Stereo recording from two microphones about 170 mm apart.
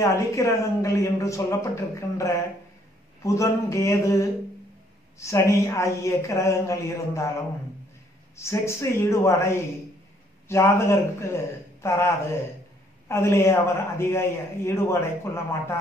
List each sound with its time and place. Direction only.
0.0 s a man's voice: 20° left (ahead or behind)
8.4 s a man's voice: 15° left (ahead or behind)